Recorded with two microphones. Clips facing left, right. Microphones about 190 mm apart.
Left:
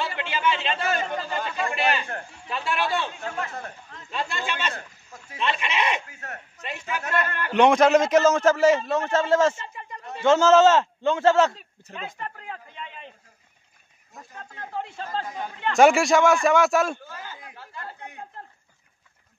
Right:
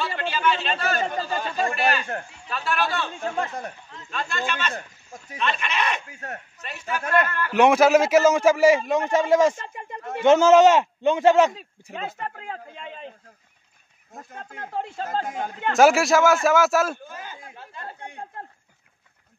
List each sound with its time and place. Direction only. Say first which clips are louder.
0.0 s chatter: right 2 dB; 20° left (ahead or behind)
1.1 s speech: right 2 dB; 35° right (ahead or behind)
1.7 s speech: right 1 dB; 20° left (ahead or behind)
3.3 s speech: right 4 dB; 35° right (ahead or behind)
4.5 s speech: right 1 dB; 25° left (ahead or behind)
7.2 s speech: right 2 dB; 20° left (ahead or behind)
7.5 s a man's voice: right 1 dB; 5° right (ahead or behind)
9.8 s a sound: right 5 dB; 50° right (ahead or behind)
10.2 s a man's voice: right 2 dB; 15° right (ahead or behind)
11.9 s speech: right 3 dB; 45° right (ahead or behind)
12.4 s a sound: right 3 dB; 40° right (ahead or behind)
14.1 s speech: right 3 dB; 50° right (ahead or behind)
15.7 s a man's voice: even; centre (ahead or behind)
17.0 s a man's voice: right 1 dB; 15° right (ahead or behind)